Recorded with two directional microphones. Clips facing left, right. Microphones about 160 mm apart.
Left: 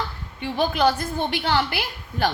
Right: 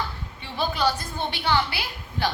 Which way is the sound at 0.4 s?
50° left (ahead or behind).